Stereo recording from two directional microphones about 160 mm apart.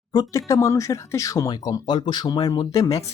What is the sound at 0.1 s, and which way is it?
Speech, 20° left (ahead or behind).